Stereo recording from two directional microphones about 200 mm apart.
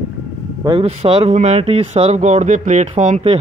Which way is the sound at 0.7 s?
30° right (ahead or behind).